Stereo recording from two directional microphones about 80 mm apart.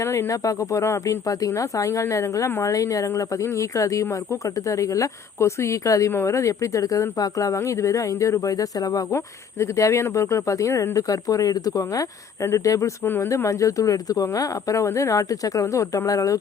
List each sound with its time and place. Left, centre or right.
0.0 s speech: left
9.1 s speech: left